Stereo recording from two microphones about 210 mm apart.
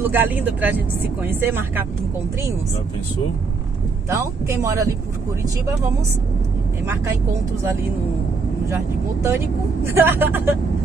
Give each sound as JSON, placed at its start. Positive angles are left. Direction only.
{"t": 0.0, "sound": "speech", "side_deg": -10}
{"t": 4.1, "sound": "speech", "side_deg": -10}
{"t": 8.6, "sound": "speech", "side_deg": -15}